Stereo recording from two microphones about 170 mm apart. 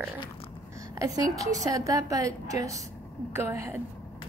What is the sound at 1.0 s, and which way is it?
A woman's voice, 20° right (ahead or behind).